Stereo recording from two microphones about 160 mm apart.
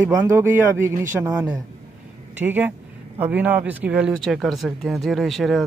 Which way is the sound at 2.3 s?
10° right (ahead or behind).